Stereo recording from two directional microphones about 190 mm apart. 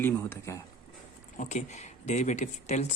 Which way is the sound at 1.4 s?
40° left (ahead or behind).